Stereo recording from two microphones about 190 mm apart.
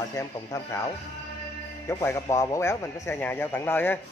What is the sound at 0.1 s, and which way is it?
Speech, 15° left (ahead or behind).